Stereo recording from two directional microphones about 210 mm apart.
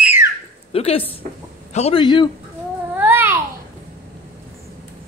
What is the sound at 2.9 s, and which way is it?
Babbling, 10° right (ahead or behind).